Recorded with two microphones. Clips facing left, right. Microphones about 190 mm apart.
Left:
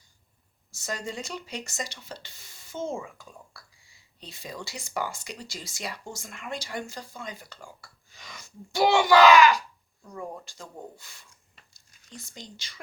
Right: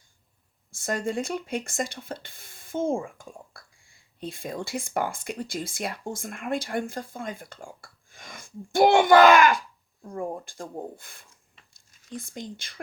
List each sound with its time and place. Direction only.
0.7 s speech: 55° right (ahead or behind)
11.9 s a sound: centre (ahead or behind)
12.1 s speech: 50° right (ahead or behind)